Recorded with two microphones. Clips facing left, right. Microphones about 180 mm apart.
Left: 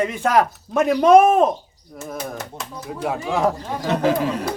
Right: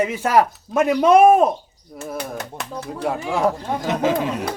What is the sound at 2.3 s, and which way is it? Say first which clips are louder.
Speech: right 2 dB; 65° right (ahead or behind).